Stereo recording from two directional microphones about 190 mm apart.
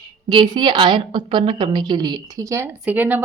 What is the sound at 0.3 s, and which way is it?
A woman's voice, 25° right (ahead or behind).